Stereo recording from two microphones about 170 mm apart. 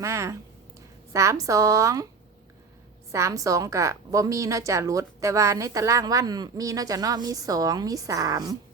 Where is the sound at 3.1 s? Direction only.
20° right (ahead or behind).